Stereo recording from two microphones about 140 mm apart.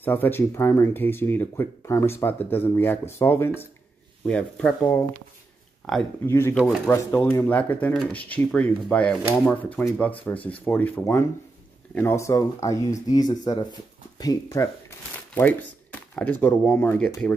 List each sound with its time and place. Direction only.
0.0 s speech: 15° left (ahead or behind)
6.2 s speech: 20° left (ahead or behind)
6.5 s speech: 5° right (ahead or behind)
6.9 s speech: 20° left (ahead or behind)